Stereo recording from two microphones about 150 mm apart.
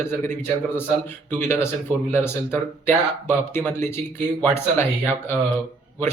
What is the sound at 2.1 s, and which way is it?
A man's voice, 15° left (ahead or behind).